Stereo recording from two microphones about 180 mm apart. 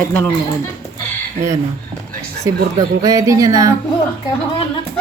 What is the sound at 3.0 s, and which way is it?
Music, 20° right (ahead or behind).